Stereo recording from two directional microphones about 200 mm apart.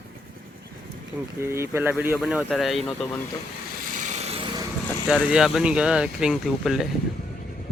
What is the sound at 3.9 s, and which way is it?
Vehicle, 35° right (ahead or behind).